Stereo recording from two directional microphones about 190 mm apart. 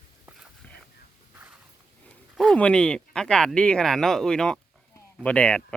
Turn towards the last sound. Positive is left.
turn(degrees=5)  # may be behind; listen again after turning